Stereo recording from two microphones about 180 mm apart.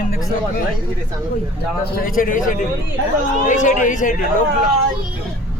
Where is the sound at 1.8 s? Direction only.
50° left (ahead or behind).